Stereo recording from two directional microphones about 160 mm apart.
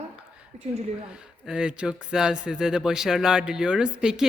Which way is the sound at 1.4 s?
5° right (ahead or behind).